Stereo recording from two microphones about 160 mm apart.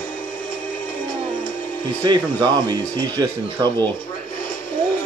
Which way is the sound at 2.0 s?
30° right (ahead or behind).